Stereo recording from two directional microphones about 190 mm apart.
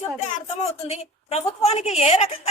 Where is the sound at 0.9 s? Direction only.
35° left (ahead or behind).